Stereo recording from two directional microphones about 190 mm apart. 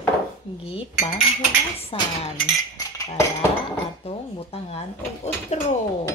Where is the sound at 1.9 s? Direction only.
30° left (ahead or behind).